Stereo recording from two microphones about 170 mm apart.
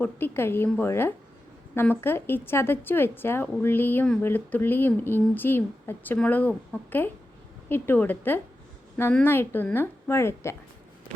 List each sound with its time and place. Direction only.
0.0 s a woman's voice: 15° left (ahead or behind)